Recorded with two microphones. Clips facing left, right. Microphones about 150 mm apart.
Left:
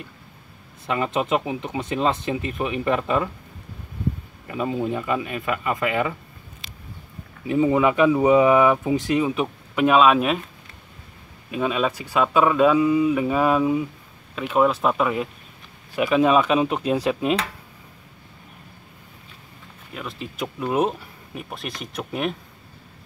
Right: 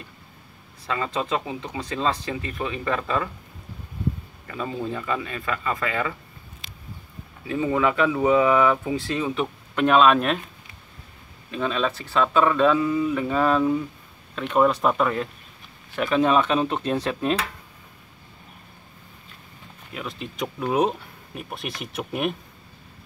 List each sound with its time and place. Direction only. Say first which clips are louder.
0.8 s speech: left 3 dB; 20° left (ahead or behind)
4.5 s speech: left 5 dB; 15° left (ahead or behind)
7.4 s speech: left 4 dB; 15° left (ahead or behind)
11.5 s speech: left 2 dB; 10° left (ahead or behind)
19.9 s speech: even; centre (ahead or behind)